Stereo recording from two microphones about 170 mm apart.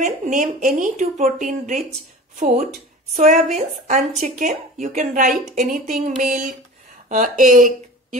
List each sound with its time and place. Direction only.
0.0 s speech: 50° right (ahead or behind)
3.2 s speech: 45° right (ahead or behind)